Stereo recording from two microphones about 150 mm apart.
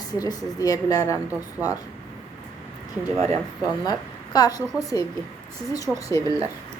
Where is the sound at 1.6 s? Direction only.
10° right (ahead or behind).